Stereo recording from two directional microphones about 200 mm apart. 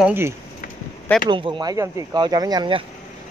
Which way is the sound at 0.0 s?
10° right (ahead or behind).